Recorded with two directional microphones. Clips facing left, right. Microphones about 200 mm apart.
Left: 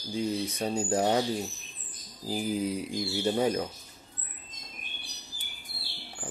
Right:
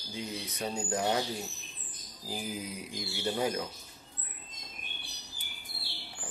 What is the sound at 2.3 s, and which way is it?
Speech, 35° left (ahead or behind).